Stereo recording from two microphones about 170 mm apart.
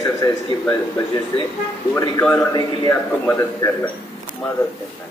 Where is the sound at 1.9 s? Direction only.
10° left (ahead or behind).